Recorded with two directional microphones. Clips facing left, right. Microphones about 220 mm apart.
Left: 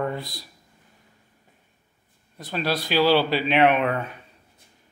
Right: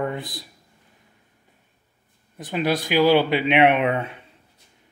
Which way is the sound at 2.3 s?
20° right (ahead or behind).